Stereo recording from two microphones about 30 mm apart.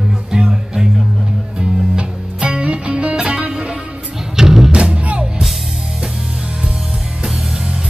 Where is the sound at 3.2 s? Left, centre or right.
Right.